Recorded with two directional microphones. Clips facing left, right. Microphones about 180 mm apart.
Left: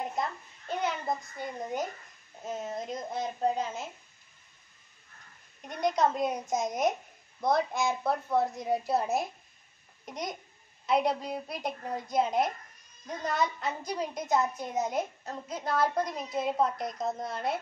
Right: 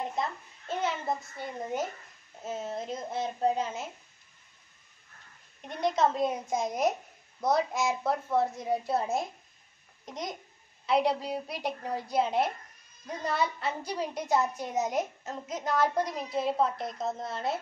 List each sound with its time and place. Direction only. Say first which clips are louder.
0.0 s a child's voice: even; centre (ahead or behind)
5.8 s a child's voice: right 1 dB; centre (ahead or behind)
16.7 s a woman's voice: left 1 dB; 25° right (ahead or behind)
17.1 s a child's voice: even; centre (ahead or behind)